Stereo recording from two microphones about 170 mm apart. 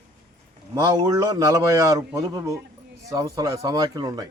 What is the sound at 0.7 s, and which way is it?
Speech, 20° right (ahead or behind).